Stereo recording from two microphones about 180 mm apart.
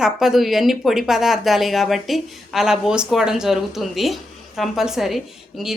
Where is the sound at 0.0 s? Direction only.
Centre (ahead or behind).